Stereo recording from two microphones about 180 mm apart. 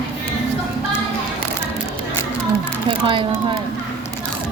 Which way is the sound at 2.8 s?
30° right (ahead or behind).